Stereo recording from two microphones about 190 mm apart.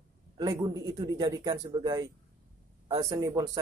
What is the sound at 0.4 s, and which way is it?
Speech, 20° right (ahead or behind).